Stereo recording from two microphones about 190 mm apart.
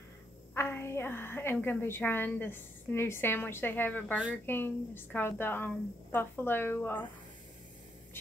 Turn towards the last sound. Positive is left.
turn(degrees=10)  # may be behind; listen again after turning